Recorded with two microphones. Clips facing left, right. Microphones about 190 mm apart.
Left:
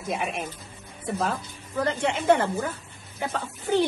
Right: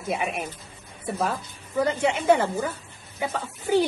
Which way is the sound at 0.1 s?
5° right (ahead or behind).